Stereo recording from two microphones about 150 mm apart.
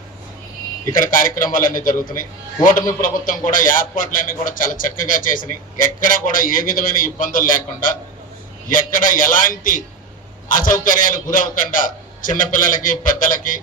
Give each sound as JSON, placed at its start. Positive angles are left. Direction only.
{"t": 0.9, "sound": "a man's voice", "side_deg": 65}